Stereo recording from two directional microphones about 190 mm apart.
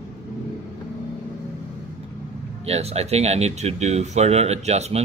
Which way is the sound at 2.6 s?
35° right (ahead or behind).